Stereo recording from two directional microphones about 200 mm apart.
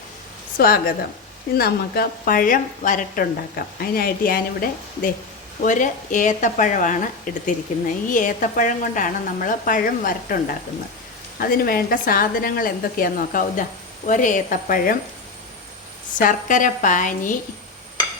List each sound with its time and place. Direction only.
0.5 s a woman's voice: 45° left (ahead or behind)
16.1 s speech: 40° left (ahead or behind)